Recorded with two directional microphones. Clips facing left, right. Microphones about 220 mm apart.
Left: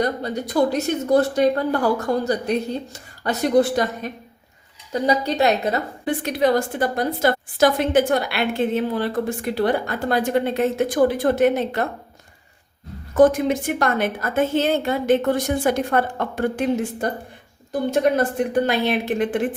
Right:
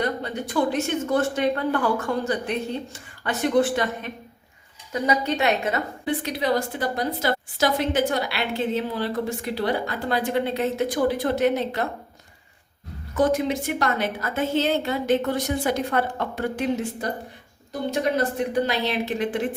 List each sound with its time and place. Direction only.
0.0 s a woman's voice: 40° left (ahead or behind)
13.1 s a woman's voice: 50° left (ahead or behind)
18.2 s a woman's voice: 50° left (ahead or behind)